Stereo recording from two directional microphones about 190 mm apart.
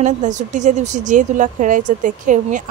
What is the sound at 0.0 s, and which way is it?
A woman's voice, 40° right (ahead or behind).